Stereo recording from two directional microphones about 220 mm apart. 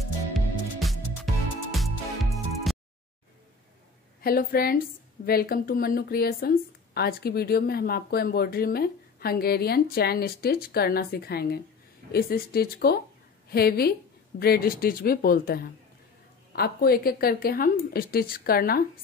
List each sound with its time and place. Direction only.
0.7 s music: centre (ahead or behind)
2.7 s a sound: centre (ahead or behind)
4.2 s a woman's voice: 45° left (ahead or behind)